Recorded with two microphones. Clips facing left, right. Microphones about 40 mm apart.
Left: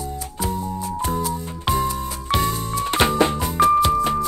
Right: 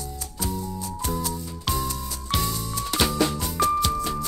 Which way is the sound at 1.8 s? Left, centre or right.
Left.